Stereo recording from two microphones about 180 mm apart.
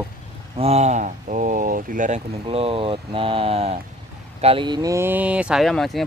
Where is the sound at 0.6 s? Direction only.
35° right (ahead or behind).